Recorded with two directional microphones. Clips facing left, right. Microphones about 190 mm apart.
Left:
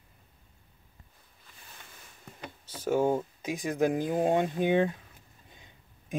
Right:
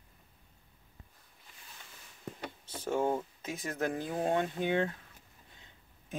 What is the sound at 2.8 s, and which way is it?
Speech, 10° left (ahead or behind).